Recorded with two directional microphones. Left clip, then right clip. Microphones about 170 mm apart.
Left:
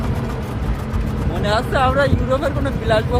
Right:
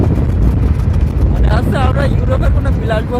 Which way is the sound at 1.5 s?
15° right (ahead or behind).